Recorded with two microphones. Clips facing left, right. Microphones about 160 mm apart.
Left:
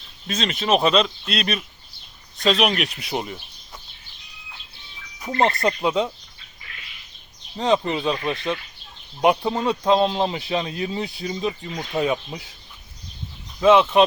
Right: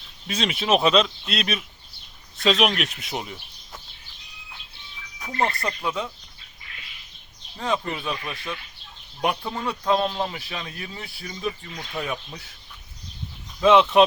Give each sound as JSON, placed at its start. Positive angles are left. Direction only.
{"t": 0.3, "sound": "speech", "side_deg": -10}
{"t": 5.6, "sound": "speech", "side_deg": 25}
{"t": 7.5, "sound": "speech", "side_deg": 20}
{"t": 9.6, "sound": "speech", "side_deg": 20}
{"t": 13.6, "sound": "speech", "side_deg": 5}